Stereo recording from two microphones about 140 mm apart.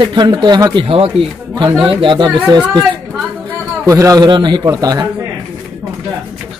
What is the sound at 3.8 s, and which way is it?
A man's voice, 25° right (ahead or behind).